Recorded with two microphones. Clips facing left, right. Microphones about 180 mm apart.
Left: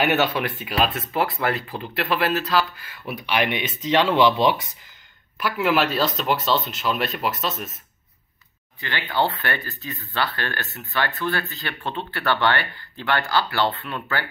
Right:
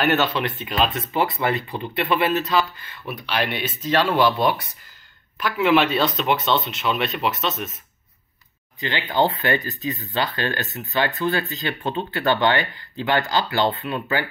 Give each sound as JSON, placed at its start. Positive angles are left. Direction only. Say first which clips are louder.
{"t": 0.0, "sound": "speech", "louder": "even", "side_deg": 10}
{"t": 5.4, "sound": "speech", "louder": "right 3 dB", "side_deg": 5}
{"t": 8.8, "sound": "speech", "louder": "right 3 dB", "side_deg": -20}